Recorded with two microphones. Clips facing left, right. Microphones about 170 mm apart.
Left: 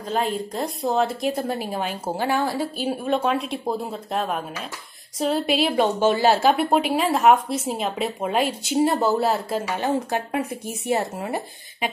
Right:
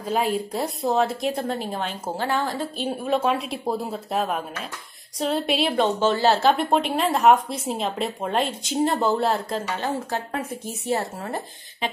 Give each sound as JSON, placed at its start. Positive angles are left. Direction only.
{"t": 0.1, "sound": "a woman's voice", "side_deg": -10}